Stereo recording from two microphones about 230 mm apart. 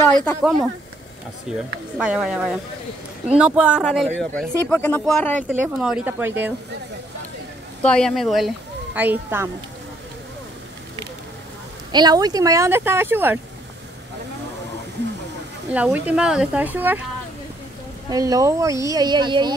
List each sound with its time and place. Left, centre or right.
0.2 s speech: centre
5.5 s speech: centre
7.8 s speech: centre
11.9 s speech: centre
15.7 s speech: centre
18.1 s speech: centre